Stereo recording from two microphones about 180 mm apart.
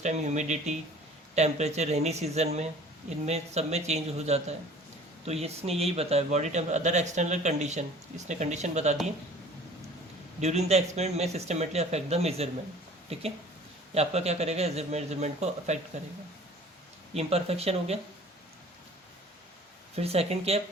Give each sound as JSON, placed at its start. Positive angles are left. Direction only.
{"t": 0.0, "sound": "a man's voice", "side_deg": -40}
{"t": 10.4, "sound": "a man's voice", "side_deg": -35}
{"t": 17.2, "sound": "a man's voice", "side_deg": -35}
{"t": 20.0, "sound": "a man's voice", "side_deg": -35}